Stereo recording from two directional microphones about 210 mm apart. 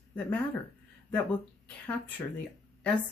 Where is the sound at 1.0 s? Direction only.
5° left (ahead or behind).